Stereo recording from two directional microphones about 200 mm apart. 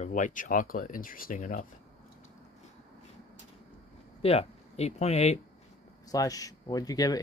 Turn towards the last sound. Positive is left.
turn(degrees=20)  # may be behind; listen again after turning